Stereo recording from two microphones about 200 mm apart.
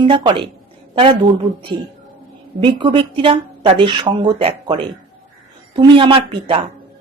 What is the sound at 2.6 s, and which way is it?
Speech, 25° right (ahead or behind).